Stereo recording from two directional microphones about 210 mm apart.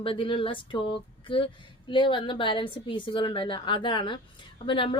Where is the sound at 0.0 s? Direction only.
25° left (ahead or behind).